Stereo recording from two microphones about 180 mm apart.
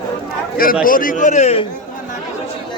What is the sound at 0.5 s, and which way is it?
A man's voice, 55° left (ahead or behind).